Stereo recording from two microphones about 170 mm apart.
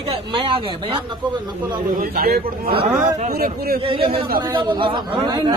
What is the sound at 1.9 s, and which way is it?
Speech, 65° right (ahead or behind).